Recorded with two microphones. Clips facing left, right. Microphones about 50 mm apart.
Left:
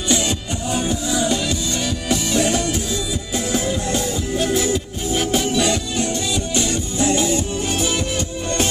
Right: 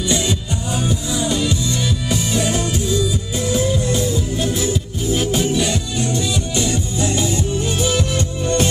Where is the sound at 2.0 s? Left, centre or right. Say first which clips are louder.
Left 3 dB; left.